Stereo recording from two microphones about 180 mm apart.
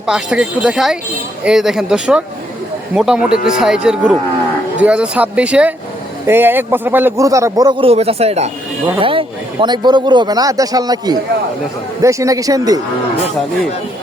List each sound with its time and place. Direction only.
0.0 s a man's voice: 5° right (ahead or behind); by 12.8 s 20° right (ahead or behind)